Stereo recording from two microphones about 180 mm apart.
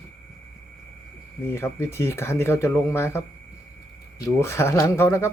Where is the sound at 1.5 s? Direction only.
15° left (ahead or behind).